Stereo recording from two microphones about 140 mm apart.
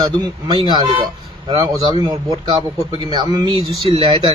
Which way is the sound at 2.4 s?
40° right (ahead or behind).